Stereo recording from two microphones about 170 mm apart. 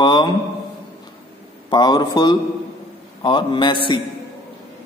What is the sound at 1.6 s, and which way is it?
Mantra, 25° left (ahead or behind).